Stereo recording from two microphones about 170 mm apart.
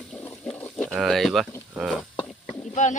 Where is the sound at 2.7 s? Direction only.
45° left (ahead or behind).